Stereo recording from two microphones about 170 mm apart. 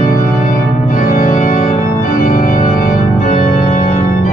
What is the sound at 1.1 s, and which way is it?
Organ, 45° left (ahead or behind).